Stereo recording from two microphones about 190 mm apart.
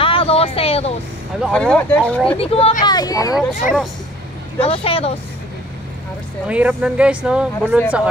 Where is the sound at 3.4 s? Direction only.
Centre (ahead or behind).